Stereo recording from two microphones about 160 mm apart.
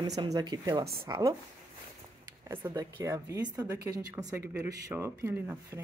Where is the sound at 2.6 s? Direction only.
20° right (ahead or behind).